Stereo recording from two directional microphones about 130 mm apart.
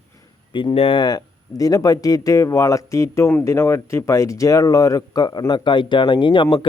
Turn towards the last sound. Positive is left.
turn(degrees=35)  # may be behind; listen again after turning